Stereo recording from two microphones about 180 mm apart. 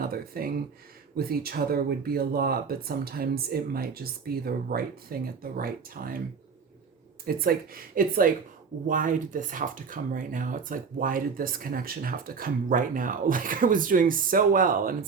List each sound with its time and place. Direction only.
0.0 s a sound: 55° right (ahead or behind)
1.1 s speech: 55° right (ahead or behind)
7.3 s speech: 55° right (ahead or behind)